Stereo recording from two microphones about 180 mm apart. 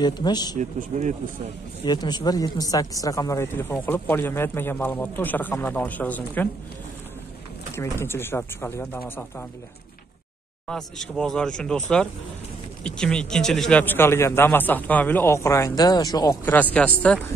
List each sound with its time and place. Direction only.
0.0 s speech: 25° left (ahead or behind)
0.6 s speech: 45° right (ahead or behind)
1.9 s a man's voice: 25° left (ahead or behind)
7.7 s a man's voice: 15° left (ahead or behind)
10.7 s a man's voice: 5° left (ahead or behind); by 16.5 s 20° left (ahead or behind)
16.7 s a man's voice: 5° left (ahead or behind)